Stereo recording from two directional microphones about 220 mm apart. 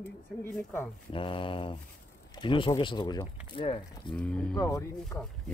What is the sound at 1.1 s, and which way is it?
Speech, 25° left (ahead or behind).